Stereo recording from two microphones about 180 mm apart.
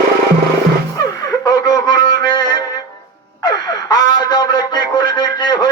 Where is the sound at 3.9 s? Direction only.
25° left (ahead or behind).